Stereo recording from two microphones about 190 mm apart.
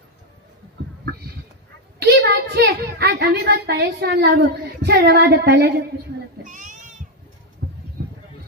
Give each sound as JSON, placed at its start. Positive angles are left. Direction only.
{"t": 2.0, "sound": "a woman's voice", "side_deg": -55}
{"t": 6.4, "sound": "child singing", "side_deg": -40}